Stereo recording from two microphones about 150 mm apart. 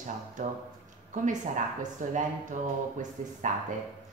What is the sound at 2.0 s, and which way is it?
Speech, 55° right (ahead or behind).